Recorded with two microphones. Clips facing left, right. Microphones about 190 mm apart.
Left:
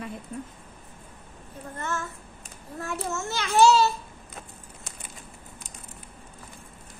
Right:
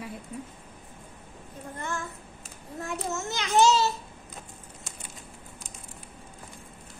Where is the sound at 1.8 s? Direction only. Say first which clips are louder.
Left 2 dB; 15° right (ahead or behind).